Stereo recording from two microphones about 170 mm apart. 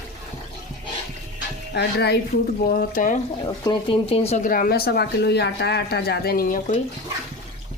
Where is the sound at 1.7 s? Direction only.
75° left (ahead or behind).